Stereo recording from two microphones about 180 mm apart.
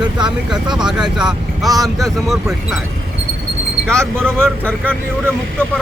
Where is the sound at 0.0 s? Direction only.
25° right (ahead or behind).